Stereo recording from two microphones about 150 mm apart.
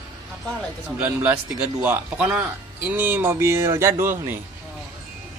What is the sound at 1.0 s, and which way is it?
Speech, 10° right (ahead or behind).